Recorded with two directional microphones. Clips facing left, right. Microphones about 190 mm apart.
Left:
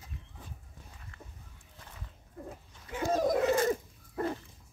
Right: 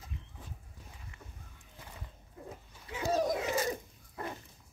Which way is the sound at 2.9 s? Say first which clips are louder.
Left 3 dB; 50° left (ahead or behind).